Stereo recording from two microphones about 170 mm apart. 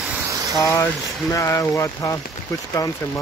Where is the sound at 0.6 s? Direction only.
15° left (ahead or behind).